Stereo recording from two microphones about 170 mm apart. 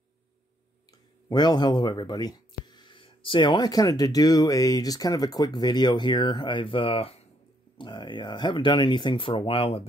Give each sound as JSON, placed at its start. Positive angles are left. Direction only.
{"t": 1.3, "sound": "speech", "side_deg": 25}